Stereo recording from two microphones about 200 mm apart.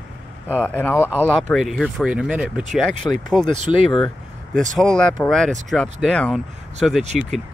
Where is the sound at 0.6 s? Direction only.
10° left (ahead or behind).